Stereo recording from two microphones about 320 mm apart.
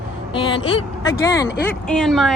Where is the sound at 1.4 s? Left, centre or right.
Left.